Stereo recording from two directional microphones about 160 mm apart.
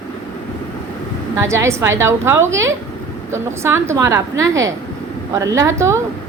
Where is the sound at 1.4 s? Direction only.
15° right (ahead or behind).